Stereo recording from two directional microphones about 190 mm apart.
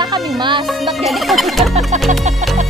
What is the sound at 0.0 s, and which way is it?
Music, 25° right (ahead or behind).